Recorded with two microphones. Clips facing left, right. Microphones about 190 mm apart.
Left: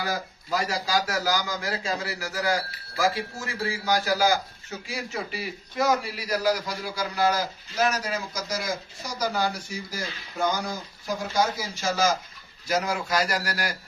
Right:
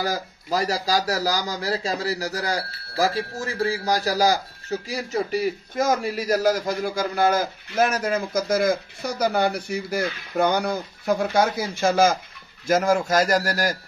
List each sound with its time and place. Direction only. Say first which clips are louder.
0.0 s speech: right 4 dB; 40° right (ahead or behind)